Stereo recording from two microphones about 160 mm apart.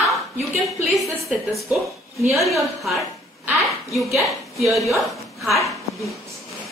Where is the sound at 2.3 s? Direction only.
Centre (ahead or behind).